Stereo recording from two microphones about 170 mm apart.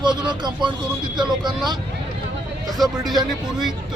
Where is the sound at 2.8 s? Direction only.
Centre (ahead or behind).